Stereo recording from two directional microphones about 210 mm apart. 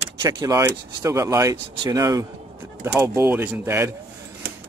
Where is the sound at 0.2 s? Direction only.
15° right (ahead or behind).